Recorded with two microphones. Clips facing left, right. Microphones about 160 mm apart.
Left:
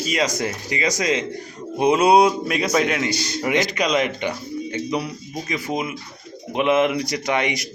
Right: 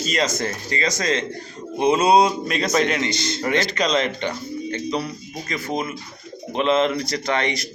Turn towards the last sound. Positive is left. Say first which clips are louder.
# left 1 dB
turn(degrees=15)  # may be behind; listen again after turning